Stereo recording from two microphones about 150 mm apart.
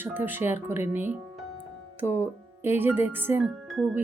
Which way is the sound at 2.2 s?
15° right (ahead or behind).